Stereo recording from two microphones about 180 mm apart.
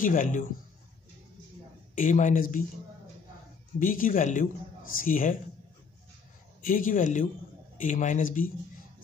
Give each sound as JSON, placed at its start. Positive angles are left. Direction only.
{"t": 0.0, "sound": "a man's voice", "side_deg": 45}
{"t": 2.0, "sound": "a man's voice", "side_deg": 45}
{"t": 3.8, "sound": "a man's voice", "side_deg": 50}
{"t": 6.6, "sound": "a man's voice", "side_deg": 50}